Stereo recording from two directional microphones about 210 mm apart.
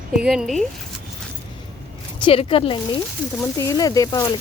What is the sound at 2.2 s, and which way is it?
Speech, 25° left (ahead or behind).